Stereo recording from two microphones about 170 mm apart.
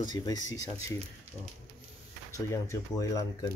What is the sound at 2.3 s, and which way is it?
Speech, 20° left (ahead or behind).